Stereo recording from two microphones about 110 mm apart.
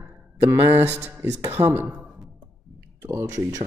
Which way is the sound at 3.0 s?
25° right (ahead or behind).